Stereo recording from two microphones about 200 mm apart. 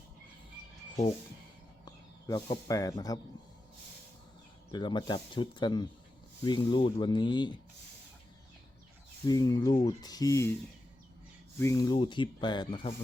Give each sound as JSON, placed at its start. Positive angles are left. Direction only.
{"t": 1.8, "sound": "speech", "side_deg": 20}
{"t": 4.7, "sound": "speech", "side_deg": 20}
{"t": 9.2, "sound": "speech", "side_deg": 20}
{"t": 11.6, "sound": "speech", "side_deg": 15}